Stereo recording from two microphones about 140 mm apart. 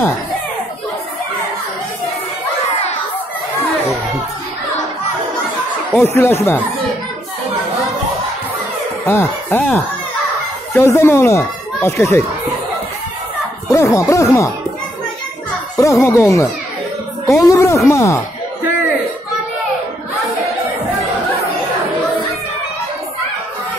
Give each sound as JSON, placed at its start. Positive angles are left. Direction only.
{"t": 5.9, "sound": "speech", "side_deg": 15}
{"t": 9.0, "sound": "speech", "side_deg": 15}
{"t": 13.7, "sound": "speech", "side_deg": 20}
{"t": 15.8, "sound": "speech", "side_deg": 20}